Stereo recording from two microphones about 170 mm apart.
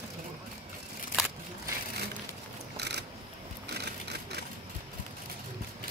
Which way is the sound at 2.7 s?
80° right.